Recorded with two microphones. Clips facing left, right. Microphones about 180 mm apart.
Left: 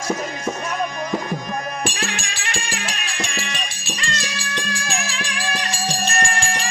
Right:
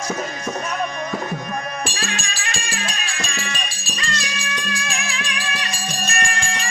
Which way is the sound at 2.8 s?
20° left (ahead or behind).